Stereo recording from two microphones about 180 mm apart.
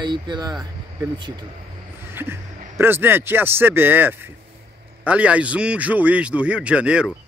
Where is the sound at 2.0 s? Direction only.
10° right (ahead or behind).